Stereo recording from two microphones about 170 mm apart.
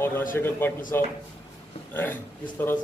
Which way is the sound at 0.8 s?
50° left (ahead or behind).